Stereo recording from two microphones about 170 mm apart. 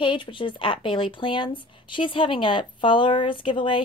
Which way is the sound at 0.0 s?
30° left (ahead or behind).